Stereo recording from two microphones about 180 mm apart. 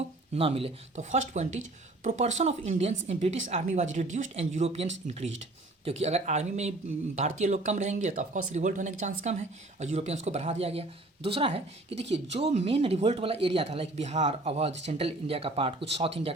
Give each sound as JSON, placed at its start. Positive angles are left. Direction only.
{"t": 0.3, "sound": "speech", "side_deg": -30}